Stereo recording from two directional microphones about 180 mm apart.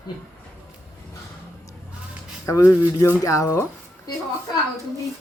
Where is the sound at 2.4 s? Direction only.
15° left (ahead or behind).